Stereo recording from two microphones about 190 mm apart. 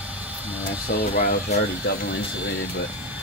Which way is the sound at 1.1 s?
55° left (ahead or behind).